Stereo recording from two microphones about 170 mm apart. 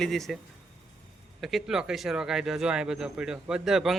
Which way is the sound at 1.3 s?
Centre (ahead or behind).